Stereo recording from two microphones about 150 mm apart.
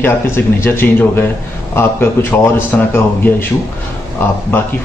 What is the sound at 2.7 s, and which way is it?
Speech, 10° left (ahead or behind).